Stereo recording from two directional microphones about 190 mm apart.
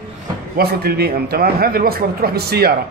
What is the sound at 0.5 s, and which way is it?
A man's voice, 55° right (ahead or behind).